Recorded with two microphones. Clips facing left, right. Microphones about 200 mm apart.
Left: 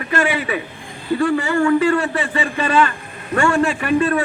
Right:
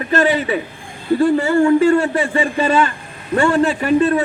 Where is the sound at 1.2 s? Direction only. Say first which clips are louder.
Right 4 dB; 40° right (ahead or behind).